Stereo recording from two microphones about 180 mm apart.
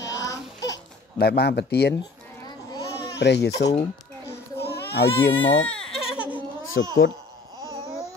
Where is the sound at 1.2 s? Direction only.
60° left (ahead or behind).